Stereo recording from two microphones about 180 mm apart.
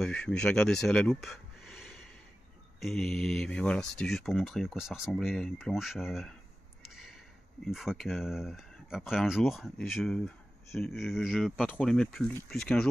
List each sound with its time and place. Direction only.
0.0 s speech: 5° left (ahead or behind)
7.6 s speech: centre (ahead or behind)